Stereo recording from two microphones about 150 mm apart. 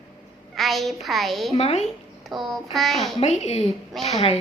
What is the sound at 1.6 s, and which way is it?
Speech, 45° left (ahead or behind).